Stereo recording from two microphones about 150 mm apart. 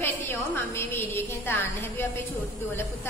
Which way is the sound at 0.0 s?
15° left (ahead or behind).